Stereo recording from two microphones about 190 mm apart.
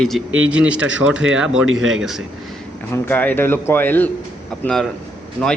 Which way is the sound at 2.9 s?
10° left (ahead or behind).